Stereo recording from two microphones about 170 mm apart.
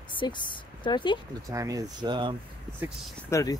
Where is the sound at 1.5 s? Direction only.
20° right (ahead or behind).